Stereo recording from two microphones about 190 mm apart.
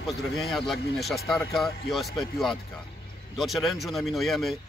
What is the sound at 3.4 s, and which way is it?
Speech, centre (ahead or behind).